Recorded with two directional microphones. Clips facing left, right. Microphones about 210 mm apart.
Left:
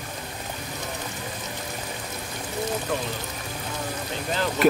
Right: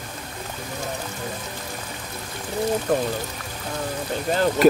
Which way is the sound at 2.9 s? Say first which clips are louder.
Right 8 dB; 45° right (ahead or behind).